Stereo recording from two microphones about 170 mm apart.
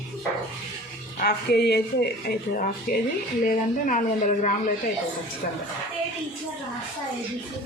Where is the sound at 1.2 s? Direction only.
75° left (ahead or behind).